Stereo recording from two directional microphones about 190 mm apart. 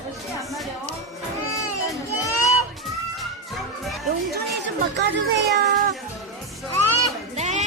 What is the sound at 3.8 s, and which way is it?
Music, centre (ahead or behind).